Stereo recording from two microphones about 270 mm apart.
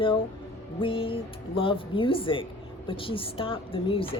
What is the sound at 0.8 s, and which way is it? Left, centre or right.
A woman's voice, centre.